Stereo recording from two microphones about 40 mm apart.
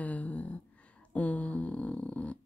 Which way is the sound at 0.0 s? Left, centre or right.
Left.